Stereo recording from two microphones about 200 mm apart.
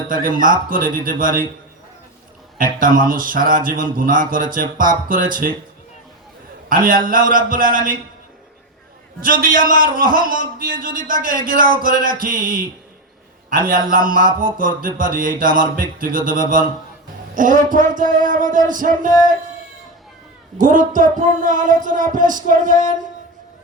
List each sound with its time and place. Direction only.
0.1 s a man's voice: 45° right (ahead or behind)
2.6 s a man's voice: 45° right (ahead or behind)
6.7 s a man's voice: 45° right (ahead or behind)
9.2 s a man's voice: 45° right (ahead or behind)
17.3 s a sound: 40° right (ahead or behind)
20.6 s a sound: 40° right (ahead or behind)